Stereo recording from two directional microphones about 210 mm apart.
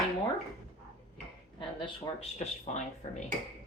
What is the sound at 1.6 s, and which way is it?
Speech, 25° left (ahead or behind).